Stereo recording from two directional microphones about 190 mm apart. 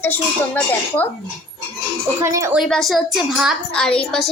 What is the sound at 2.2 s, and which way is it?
Speech, 15° right (ahead or behind).